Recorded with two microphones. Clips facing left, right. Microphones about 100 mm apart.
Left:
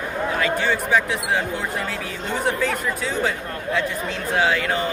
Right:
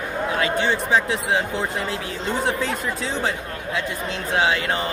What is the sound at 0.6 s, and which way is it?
Speech, 20° right (ahead or behind).